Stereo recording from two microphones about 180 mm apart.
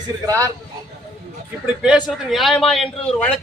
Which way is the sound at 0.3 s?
20° right (ahead or behind).